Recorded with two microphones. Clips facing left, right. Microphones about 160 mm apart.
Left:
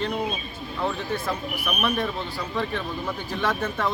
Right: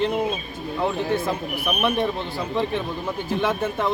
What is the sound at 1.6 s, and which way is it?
Speech, 20° right (ahead or behind).